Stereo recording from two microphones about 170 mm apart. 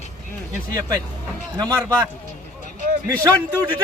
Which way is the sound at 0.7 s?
20° right (ahead or behind).